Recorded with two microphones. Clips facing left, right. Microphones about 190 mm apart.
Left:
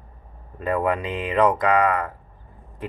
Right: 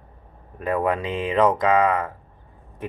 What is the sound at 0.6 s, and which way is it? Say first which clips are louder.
Speech: even; 15° right (ahead or behind).